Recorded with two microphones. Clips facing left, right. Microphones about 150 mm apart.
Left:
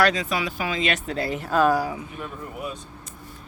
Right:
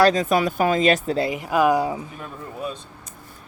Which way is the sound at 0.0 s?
45° right (ahead or behind).